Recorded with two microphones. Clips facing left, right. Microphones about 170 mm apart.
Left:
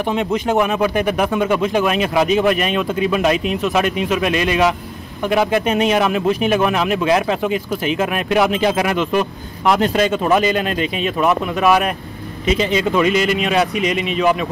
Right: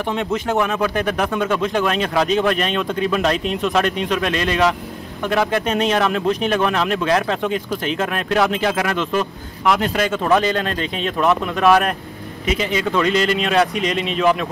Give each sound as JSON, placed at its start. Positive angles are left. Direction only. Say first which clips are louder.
{"t": 0.1, "sound": "speech", "louder": "left 3 dB", "side_deg": 15}
{"t": 9.7, "sound": "speech", "louder": "left 3 dB", "side_deg": 25}
{"t": 12.4, "sound": "speech", "louder": "left 4 dB", "side_deg": 25}
{"t": 12.9, "sound": "speech", "louder": "even", "side_deg": 10}